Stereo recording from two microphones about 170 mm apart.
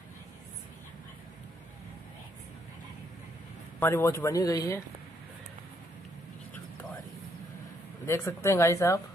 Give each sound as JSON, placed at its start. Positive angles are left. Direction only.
{"t": 3.8, "sound": "speech", "side_deg": 15}
{"t": 8.1, "sound": "speech", "side_deg": 15}